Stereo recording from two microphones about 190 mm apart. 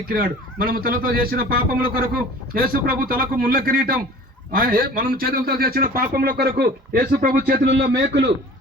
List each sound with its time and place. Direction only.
0.0 s a man's voice: 50° right (ahead or behind)